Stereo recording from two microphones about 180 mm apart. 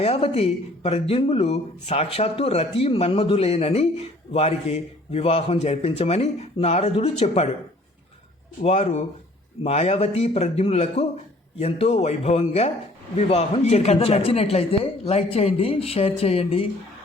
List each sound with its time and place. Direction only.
0.0 s speech: 35° left (ahead or behind)
8.6 s speech: 35° left (ahead or behind)